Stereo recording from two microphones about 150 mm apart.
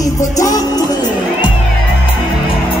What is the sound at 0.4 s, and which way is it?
Music, 25° left (ahead or behind).